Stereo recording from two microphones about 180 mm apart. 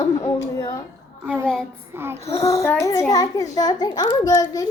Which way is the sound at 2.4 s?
15° left (ahead or behind).